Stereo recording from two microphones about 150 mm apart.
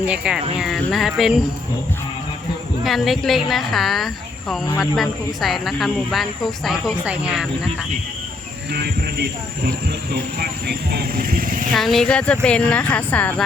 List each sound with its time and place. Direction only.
0.0 s speech: 10° right (ahead or behind)
2.8 s speech: centre (ahead or behind)
8.7 s speech: 90° right; by 11.7 s 65° right (ahead or behind)
11.7 s speech: centre (ahead or behind)